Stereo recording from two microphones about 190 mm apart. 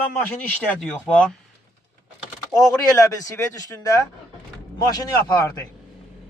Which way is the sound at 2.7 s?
20° left (ahead or behind).